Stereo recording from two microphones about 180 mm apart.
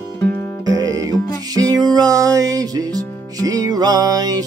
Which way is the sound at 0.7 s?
20° right (ahead or behind).